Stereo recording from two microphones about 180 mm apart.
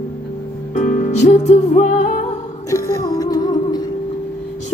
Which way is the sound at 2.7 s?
20° left (ahead or behind).